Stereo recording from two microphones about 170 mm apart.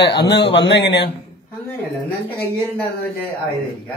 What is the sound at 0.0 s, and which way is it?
Speech, 85° left.